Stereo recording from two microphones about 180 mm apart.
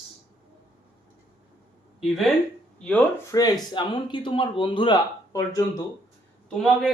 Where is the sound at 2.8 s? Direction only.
5° left (ahead or behind).